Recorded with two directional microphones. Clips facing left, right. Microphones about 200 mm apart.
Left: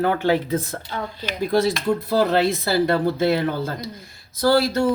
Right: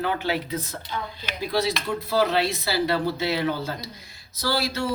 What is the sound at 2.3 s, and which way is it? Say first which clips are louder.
Speech: left 5 dB; 50° left (ahead or behind).